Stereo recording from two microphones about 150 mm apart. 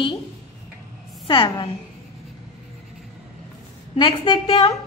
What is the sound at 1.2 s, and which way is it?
Speech, 35° left (ahead or behind).